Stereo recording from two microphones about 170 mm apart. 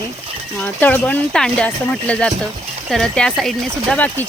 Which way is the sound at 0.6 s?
10° left (ahead or behind).